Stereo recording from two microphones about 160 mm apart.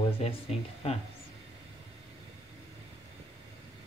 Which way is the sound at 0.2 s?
40° left (ahead or behind).